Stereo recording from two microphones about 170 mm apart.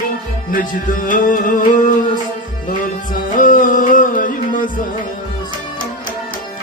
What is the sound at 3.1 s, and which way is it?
Music, 50° left (ahead or behind).